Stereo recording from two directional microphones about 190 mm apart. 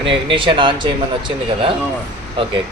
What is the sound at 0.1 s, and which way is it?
Speech, 25° right (ahead or behind).